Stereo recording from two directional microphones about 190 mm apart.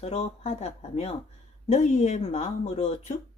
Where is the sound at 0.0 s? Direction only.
35° left (ahead or behind).